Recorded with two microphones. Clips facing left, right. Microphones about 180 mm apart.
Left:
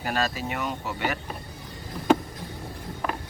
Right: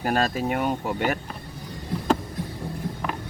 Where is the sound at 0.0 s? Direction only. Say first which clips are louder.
Right 4 dB; 45° right (ahead or behind).